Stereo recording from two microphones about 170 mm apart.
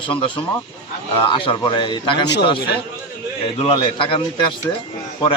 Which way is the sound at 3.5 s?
30° left (ahead or behind).